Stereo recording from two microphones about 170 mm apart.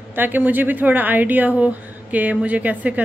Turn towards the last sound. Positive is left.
turn(degrees=-10)  # may be behind; listen again after turning